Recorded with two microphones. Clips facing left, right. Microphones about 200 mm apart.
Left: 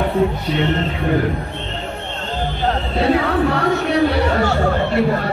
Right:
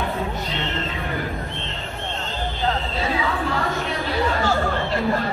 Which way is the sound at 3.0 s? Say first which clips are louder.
Left 13 dB; 65° left (ahead or behind).